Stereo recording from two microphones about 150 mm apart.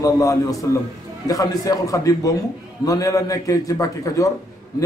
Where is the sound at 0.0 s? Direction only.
25° left (ahead or behind).